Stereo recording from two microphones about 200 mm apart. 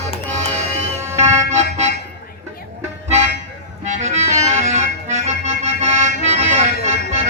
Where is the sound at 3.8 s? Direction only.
35° right (ahead or behind).